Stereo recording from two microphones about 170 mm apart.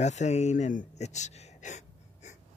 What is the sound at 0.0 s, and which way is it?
Speech, 45° left (ahead or behind).